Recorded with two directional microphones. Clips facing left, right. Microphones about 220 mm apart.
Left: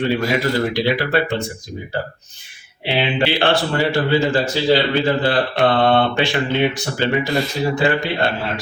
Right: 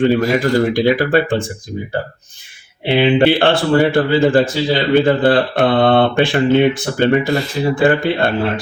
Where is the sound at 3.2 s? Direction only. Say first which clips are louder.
Right 5 dB; 50° right (ahead or behind).